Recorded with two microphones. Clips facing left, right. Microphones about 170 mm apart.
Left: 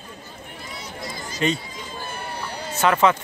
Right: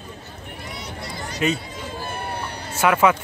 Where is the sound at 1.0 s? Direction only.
65° right (ahead or behind).